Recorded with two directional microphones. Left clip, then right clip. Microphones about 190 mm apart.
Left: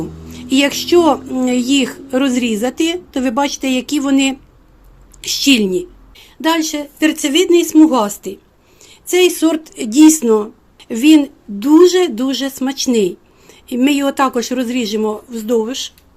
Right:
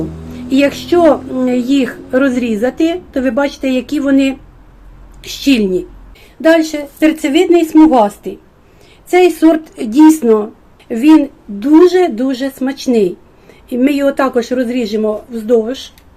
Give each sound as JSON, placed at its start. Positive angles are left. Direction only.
{"t": 0.3, "sound": "a woman's voice", "side_deg": 55}
{"t": 10.8, "sound": "a woman's voice", "side_deg": 55}